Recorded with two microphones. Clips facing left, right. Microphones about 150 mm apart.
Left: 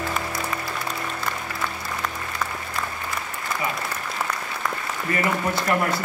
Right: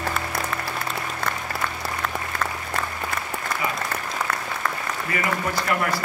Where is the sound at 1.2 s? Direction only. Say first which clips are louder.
Right 3 dB; 55° right (ahead or behind).